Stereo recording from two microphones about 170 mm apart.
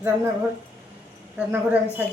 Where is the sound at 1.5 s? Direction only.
10° right (ahead or behind).